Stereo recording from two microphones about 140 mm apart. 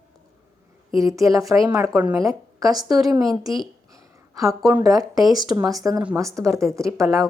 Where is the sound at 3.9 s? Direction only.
25° right (ahead or behind).